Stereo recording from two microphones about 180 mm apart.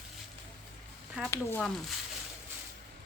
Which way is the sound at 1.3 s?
10° left (ahead or behind).